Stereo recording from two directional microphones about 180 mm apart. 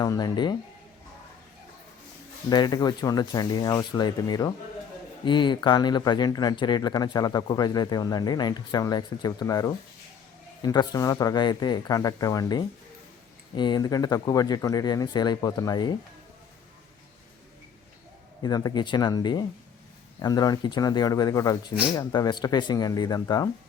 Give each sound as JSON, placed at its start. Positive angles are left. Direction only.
{"t": 0.0, "sound": "speech", "side_deg": 20}
{"t": 2.5, "sound": "speech", "side_deg": 25}
{"t": 18.4, "sound": "speech", "side_deg": 20}